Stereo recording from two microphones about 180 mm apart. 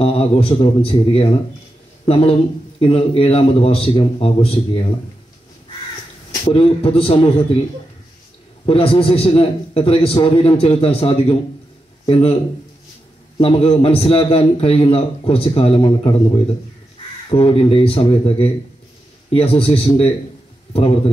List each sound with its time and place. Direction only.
0.0 s a man's voice: 30° left (ahead or behind)
6.4 s a man's voice: 30° left (ahead or behind)
8.6 s a man's voice: 30° left (ahead or behind)
13.4 s a man's voice: 30° left (ahead or behind)
17.3 s a man's voice: 30° left (ahead or behind)